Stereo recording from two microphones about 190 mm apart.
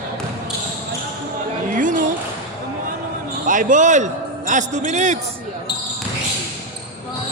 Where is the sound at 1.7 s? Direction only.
45° right (ahead or behind).